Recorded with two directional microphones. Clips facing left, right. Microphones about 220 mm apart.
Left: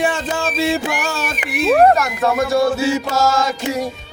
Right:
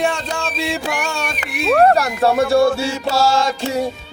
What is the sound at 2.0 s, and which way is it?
Music, 30° right (ahead or behind).